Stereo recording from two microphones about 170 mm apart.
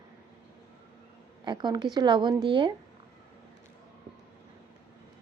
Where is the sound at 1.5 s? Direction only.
25° right (ahead or behind).